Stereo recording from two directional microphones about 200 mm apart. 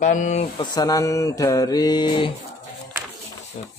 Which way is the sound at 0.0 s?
40° left (ahead or behind).